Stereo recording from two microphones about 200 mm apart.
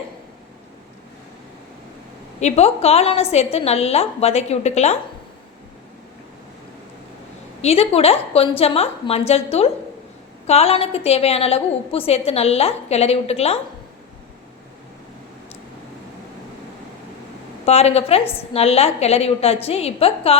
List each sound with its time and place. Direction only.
2.4 s a woman's voice: 30° left (ahead or behind)
7.6 s a woman's voice: 30° left (ahead or behind)
17.7 s a woman's voice: 30° left (ahead or behind)